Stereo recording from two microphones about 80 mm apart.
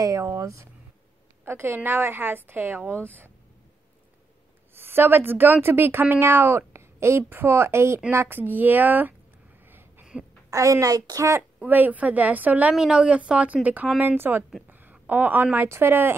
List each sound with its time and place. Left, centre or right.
0.0 s speech: right
1.4 s a woman's voice: right
4.7 s a woman's voice: right
9.7 s a sound: right
10.5 s a woman's voice: right
11.6 s a woman's voice: right
14.7 s a sound: right
15.7 s a woman's voice: right